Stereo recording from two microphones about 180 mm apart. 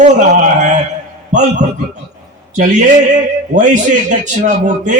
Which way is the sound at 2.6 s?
45° right (ahead or behind).